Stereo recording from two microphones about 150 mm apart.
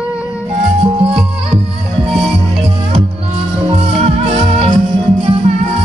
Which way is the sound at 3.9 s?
45° right (ahead or behind).